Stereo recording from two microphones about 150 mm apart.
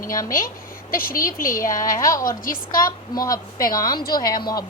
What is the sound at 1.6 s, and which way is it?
A woman's voice, 20° left (ahead or behind).